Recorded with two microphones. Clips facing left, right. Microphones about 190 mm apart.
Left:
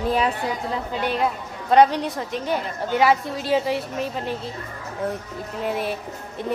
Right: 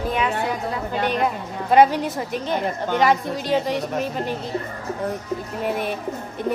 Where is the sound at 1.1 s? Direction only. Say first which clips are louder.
Right 1 dB; centre (ahead or behind).